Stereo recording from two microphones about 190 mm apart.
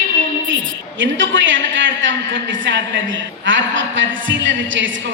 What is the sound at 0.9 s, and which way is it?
A woman's voice, 80° right.